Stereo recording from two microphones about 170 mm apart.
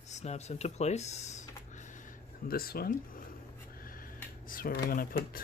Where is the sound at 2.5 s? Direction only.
60° left (ahead or behind).